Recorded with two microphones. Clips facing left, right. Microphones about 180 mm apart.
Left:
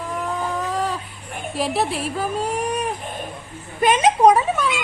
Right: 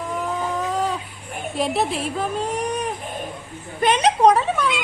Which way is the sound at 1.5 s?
Centre (ahead or behind).